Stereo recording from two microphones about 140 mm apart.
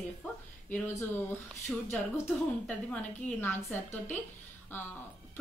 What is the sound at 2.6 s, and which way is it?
A woman's voice, 10° left (ahead or behind).